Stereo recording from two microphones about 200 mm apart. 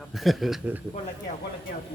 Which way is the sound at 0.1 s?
Centre (ahead or behind).